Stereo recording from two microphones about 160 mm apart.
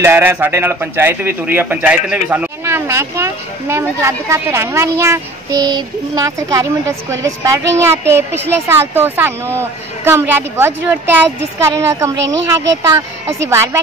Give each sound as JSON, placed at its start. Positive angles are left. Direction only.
{"t": 0.0, "sound": "a man's voice", "side_deg": -15}